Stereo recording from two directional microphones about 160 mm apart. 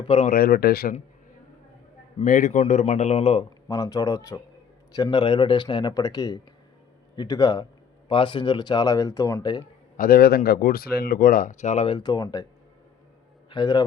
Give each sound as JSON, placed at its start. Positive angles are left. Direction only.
{"t": 0.0, "sound": "speech", "side_deg": 40}
{"t": 0.3, "sound": "speech", "side_deg": 65}
{"t": 2.2, "sound": "speech", "side_deg": 55}
{"t": 3.7, "sound": "speech", "side_deg": 20}
{"t": 10.0, "sound": "speech", "side_deg": 65}
{"t": 11.9, "sound": "speech", "side_deg": 30}
{"t": 13.5, "sound": "speech", "side_deg": 25}